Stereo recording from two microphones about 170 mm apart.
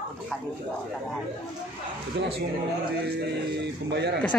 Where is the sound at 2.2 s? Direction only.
35° right (ahead or behind).